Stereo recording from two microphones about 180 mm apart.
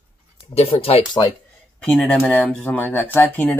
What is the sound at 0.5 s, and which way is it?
Speech, 30° left (ahead or behind).